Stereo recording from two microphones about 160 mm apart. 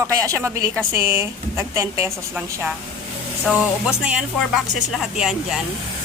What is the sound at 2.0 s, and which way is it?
A woman's voice, centre (ahead or behind).